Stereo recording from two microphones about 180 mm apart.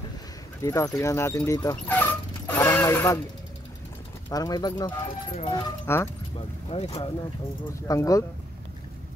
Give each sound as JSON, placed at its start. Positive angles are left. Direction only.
{"t": 0.6, "sound": "speech", "side_deg": 15}
{"t": 4.3, "sound": "speech", "side_deg": 20}
{"t": 6.3, "sound": "speech", "side_deg": 35}
{"t": 7.9, "sound": "speech", "side_deg": 15}